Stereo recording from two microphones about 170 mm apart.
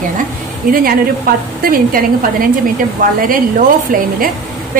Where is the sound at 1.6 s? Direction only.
60° right (ahead or behind).